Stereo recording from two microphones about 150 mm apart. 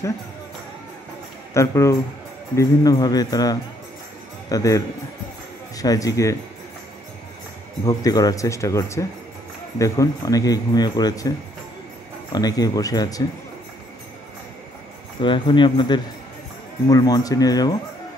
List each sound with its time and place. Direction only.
1.5 s speech: 20° left (ahead or behind)
7.8 s speech: 25° left (ahead or behind)
15.2 s speech: 35° left (ahead or behind)